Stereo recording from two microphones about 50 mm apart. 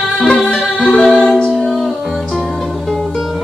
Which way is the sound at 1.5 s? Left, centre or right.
Centre.